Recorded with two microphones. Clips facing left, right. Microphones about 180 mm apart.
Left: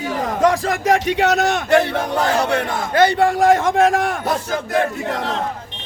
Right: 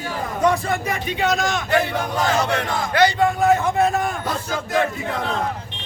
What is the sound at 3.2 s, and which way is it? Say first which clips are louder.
A man's voice: left 3 dB; 85° left.